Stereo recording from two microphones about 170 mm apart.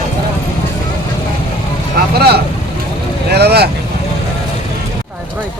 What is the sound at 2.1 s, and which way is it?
Vehicle, 70° right (ahead or behind).